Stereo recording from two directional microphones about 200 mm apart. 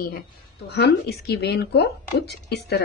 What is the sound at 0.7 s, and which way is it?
A woman's voice, 55° left (ahead or behind).